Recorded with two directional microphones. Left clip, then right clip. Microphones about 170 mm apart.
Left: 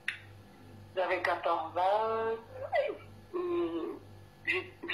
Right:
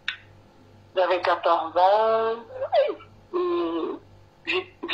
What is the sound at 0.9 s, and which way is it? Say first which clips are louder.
Fowl: right 9 dB; 30° right (ahead or behind).